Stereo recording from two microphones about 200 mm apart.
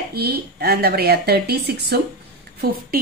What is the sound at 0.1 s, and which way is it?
Speech, 50° right (ahead or behind).